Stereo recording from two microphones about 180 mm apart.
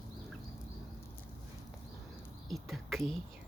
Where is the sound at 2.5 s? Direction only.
Centre (ahead or behind).